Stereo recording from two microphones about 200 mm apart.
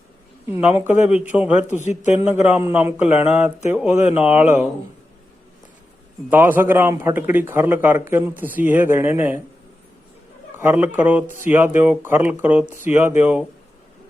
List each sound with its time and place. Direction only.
0.5 s a man's voice: 10° right (ahead or behind)
1.8 s speech: 35° left (ahead or behind)
2.3 s a man's voice: 10° right (ahead or behind)
6.3 s a man's voice: 10° right (ahead or behind)
10.6 s a man's voice: 10° right (ahead or behind)